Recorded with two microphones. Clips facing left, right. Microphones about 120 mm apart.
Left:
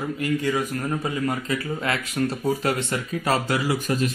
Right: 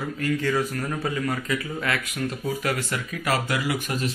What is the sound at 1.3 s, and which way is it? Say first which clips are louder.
Speech: left 2 dB; 30° left (ahead or behind).